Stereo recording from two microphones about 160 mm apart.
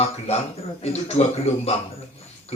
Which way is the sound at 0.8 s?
40° left (ahead or behind).